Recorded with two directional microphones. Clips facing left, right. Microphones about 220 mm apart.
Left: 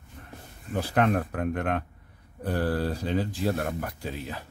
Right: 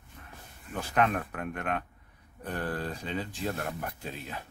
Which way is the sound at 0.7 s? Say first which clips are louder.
Left 4 dB; 35° left (ahead or behind).